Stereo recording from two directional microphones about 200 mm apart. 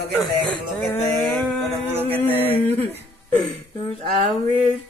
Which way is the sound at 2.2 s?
10° left (ahead or behind).